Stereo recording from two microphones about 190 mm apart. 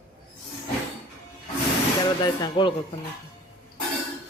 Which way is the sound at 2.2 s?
25° left (ahead or behind).